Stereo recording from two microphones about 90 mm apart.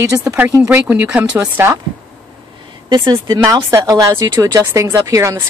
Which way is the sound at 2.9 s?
55° right (ahead or behind).